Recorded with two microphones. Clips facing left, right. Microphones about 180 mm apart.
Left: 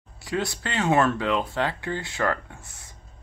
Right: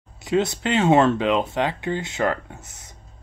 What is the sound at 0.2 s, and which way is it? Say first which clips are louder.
Speech: right 7 dB; 20° right (ahead or behind).